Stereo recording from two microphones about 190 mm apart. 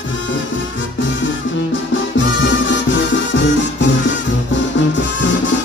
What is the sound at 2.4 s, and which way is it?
Music, 70° left (ahead or behind).